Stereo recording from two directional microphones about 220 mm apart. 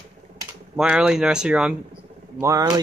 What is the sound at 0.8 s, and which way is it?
Speech, 5° right (ahead or behind).